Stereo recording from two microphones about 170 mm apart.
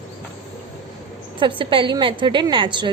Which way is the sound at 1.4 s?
30° right (ahead or behind).